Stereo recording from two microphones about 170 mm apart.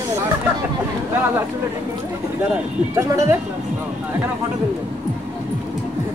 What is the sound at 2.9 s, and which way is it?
Speech, 15° right (ahead or behind).